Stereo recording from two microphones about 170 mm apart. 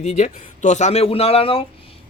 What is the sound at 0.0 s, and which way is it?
A man's voice, 45° left (ahead or behind).